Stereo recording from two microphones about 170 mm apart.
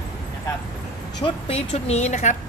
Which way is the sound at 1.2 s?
40° left (ahead or behind).